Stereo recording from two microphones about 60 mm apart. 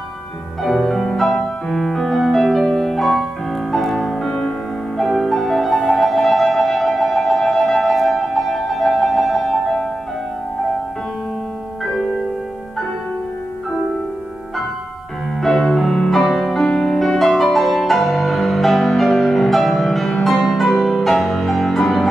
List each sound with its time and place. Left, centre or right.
0.7 s music: centre
5.8 s music: centre
6.0 s music: centre
15.4 s music: centre